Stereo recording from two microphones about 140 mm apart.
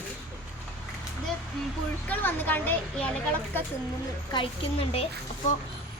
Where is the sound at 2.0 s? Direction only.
15° left (ahead or behind).